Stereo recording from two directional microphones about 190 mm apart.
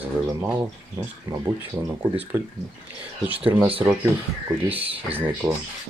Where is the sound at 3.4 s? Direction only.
25° right (ahead or behind).